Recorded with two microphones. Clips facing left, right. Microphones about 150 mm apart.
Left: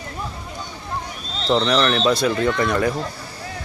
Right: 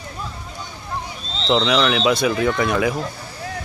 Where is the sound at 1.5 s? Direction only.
Centre (ahead or behind).